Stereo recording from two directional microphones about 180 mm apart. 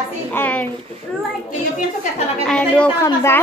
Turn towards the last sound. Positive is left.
turn(degrees=15)  # may be behind; listen again after turning